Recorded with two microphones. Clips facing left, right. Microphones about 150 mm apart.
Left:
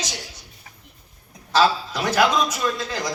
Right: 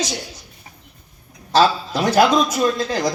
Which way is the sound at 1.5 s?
35° right (ahead or behind).